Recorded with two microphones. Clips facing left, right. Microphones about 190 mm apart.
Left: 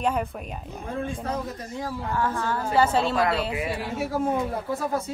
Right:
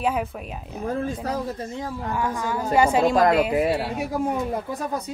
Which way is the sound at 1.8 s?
15° right (ahead or behind).